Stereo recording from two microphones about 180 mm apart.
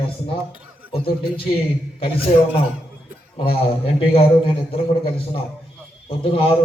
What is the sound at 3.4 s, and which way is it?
A man's voice, 30° left (ahead or behind).